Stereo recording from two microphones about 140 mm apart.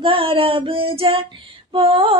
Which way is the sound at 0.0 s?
40° right (ahead or behind).